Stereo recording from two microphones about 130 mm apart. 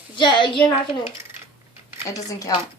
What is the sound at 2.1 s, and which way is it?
Speech, 25° left (ahead or behind).